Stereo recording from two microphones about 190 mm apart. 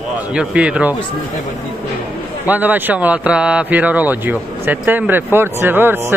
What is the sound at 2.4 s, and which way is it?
Speech, 10° right (ahead or behind).